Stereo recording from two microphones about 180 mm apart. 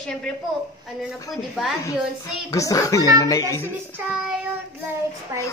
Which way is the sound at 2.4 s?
20° left (ahead or behind).